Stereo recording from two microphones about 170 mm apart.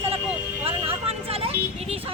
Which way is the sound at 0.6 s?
35° right (ahead or behind).